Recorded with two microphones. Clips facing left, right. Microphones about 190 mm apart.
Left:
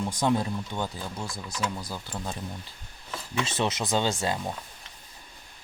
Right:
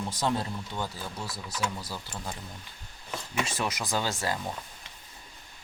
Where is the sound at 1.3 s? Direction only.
5° right (ahead or behind).